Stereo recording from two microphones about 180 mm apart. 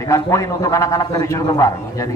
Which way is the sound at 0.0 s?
15° left (ahead or behind).